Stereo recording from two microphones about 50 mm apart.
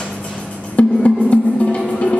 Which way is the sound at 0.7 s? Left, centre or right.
Left.